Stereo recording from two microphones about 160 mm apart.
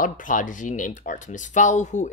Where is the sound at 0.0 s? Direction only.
55° left (ahead or behind).